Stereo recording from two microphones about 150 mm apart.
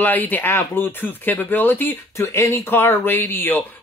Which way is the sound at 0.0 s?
10° left (ahead or behind).